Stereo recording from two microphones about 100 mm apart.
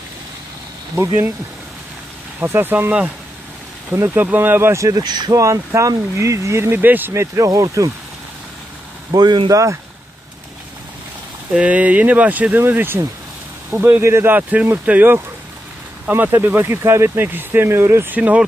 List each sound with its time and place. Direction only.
0.9 s speech: 25° right (ahead or behind)
2.4 s speech: 20° right (ahead or behind); by 5.4 s 45° right (ahead or behind)
5.4 s speech: 30° right (ahead or behind)
9.1 s speech: 45° right (ahead or behind)
9.5 s speech: 35° right (ahead or behind)
11.5 s speech: 15° right (ahead or behind)